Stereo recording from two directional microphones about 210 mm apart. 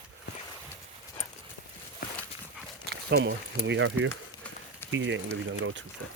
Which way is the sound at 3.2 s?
60° right (ahead or behind).